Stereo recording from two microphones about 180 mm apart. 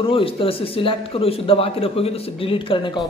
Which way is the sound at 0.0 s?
30° left (ahead or behind).